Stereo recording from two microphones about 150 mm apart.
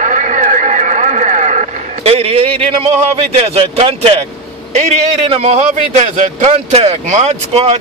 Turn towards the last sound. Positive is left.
turn(degrees=-45)  # may be behind; listen again after turning